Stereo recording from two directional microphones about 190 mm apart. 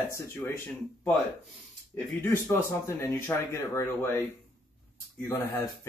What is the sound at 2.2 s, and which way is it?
Speech, 10° left (ahead or behind).